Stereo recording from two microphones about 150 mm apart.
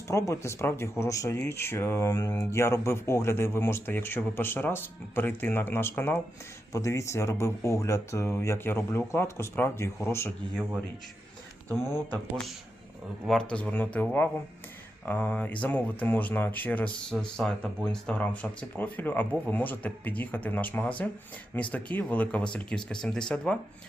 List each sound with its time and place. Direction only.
0.1 s speech: 20° left (ahead or behind)
11.7 s speech: 15° left (ahead or behind)
13.2 s speech: 5° left (ahead or behind)